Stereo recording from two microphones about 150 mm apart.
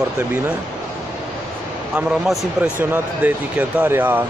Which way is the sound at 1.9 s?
5° right (ahead or behind).